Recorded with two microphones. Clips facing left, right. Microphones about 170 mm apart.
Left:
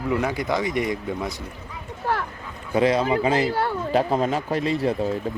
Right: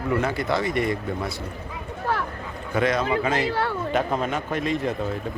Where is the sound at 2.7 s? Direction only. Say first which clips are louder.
Left 3 dB; 30° left (ahead or behind).